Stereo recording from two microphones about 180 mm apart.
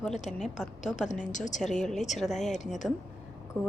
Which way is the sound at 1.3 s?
45° left (ahead or behind).